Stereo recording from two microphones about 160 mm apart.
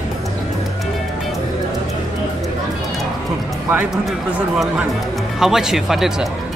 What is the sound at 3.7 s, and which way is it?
Speech, 15° right (ahead or behind).